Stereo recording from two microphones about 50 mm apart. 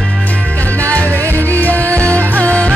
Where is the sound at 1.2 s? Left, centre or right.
Right.